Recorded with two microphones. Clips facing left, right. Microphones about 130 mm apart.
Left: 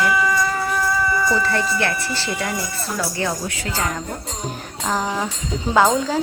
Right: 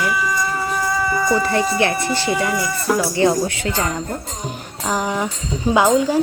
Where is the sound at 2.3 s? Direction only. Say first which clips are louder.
Right 5 dB; 70° right (ahead or behind).